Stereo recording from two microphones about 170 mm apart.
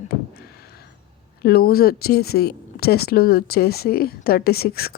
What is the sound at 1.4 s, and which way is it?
Speech, 65° left (ahead or behind).